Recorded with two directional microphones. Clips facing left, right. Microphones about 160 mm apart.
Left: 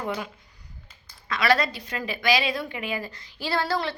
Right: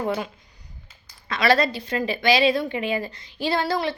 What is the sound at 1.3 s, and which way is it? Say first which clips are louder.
A woman's voice: right 3 dB; 30° right (ahead or behind).